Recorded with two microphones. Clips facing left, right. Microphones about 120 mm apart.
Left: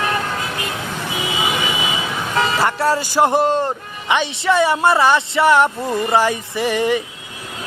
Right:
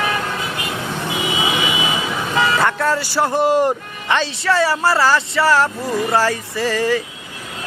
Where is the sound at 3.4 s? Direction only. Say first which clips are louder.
Right 3 dB; 10° right (ahead or behind).